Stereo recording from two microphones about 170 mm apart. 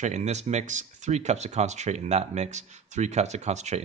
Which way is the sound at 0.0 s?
40° right (ahead or behind).